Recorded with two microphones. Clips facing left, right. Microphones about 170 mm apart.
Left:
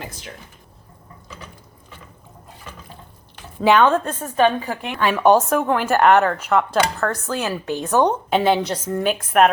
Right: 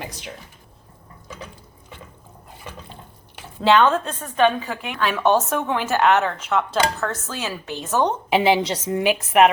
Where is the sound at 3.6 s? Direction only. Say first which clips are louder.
Left 1 dB; 10° left (ahead or behind).